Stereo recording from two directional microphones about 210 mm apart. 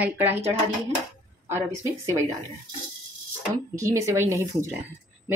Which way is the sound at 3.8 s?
15° right (ahead or behind).